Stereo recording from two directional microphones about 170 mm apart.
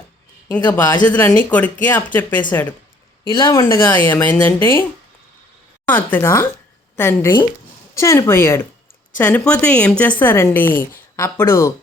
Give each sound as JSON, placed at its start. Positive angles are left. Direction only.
{"t": 0.5, "sound": "a woman's voice", "side_deg": 10}
{"t": 3.2, "sound": "a woman's voice", "side_deg": 25}
{"t": 5.9, "sound": "a woman's voice", "side_deg": 10}